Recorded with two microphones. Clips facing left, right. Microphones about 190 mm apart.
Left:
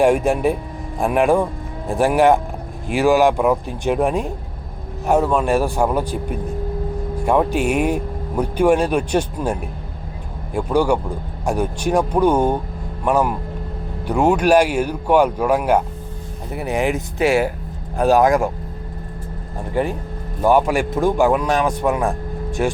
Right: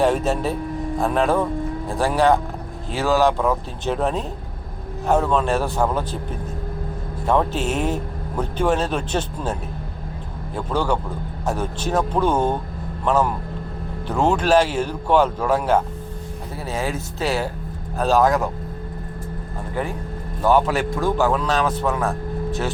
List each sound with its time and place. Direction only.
0.0 s speech: 15° left (ahead or behind)
7.3 s speech: 10° left (ahead or behind)
20.4 s speech: 15° left (ahead or behind)